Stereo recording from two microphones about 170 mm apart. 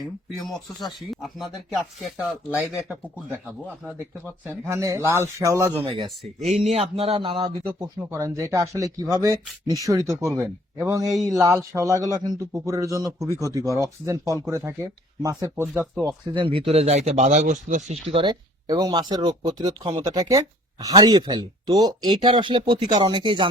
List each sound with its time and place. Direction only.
0.4 s speech: centre (ahead or behind)
4.4 s speech: 15° right (ahead or behind)
5.8 s speech: 30° right (ahead or behind)
6.5 s speech: 40° right (ahead or behind); by 16.1 s 15° right (ahead or behind)
16.2 s speech: 30° right (ahead or behind); by 17.9 s 45° right (ahead or behind)
18.1 s speech: 25° right (ahead or behind)